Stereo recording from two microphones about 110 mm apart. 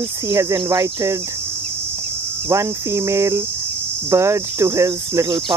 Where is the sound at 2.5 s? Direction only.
30° right (ahead or behind).